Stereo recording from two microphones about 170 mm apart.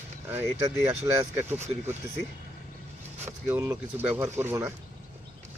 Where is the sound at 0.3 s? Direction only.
15° right (ahead or behind).